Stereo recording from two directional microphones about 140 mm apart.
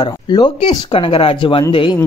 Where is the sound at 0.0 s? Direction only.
30° left (ahead or behind).